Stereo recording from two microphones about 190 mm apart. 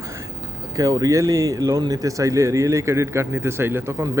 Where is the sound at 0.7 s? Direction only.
20° right (ahead or behind).